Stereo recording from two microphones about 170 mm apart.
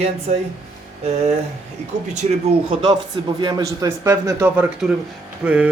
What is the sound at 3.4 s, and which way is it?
A man's voice, 25° right (ahead or behind).